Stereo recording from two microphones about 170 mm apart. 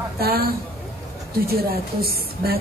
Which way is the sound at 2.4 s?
65° right (ahead or behind).